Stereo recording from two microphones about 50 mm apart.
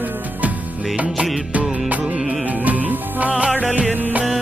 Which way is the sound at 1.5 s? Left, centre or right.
Right.